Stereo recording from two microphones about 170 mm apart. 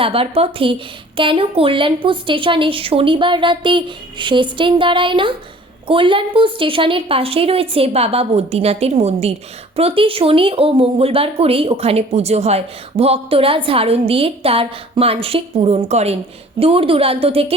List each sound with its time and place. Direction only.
0.0 s a woman's voice: 35° right (ahead or behind)